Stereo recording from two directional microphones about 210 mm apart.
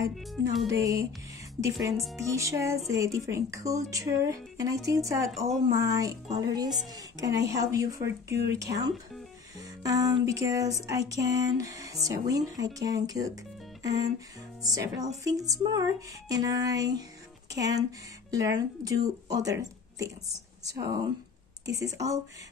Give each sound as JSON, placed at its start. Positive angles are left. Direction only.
{"t": 0.1, "sound": "music", "side_deg": 0}
{"t": 0.7, "sound": "music", "side_deg": -15}
{"t": 17.5, "sound": "speech", "side_deg": -55}
{"t": 18.6, "sound": "speech", "side_deg": -15}
{"t": 20.6, "sound": "music", "side_deg": -15}